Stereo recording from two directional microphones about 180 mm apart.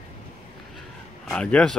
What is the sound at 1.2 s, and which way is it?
Speech, 5° left (ahead or behind).